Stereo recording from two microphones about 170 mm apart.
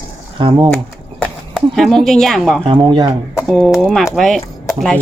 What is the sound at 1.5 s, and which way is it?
A woman's voice, centre (ahead or behind).